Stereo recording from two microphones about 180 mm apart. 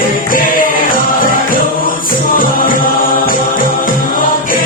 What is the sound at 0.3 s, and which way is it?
Music, 50° left (ahead or behind).